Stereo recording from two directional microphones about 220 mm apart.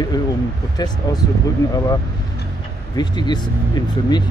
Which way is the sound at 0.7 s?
20° left (ahead or behind).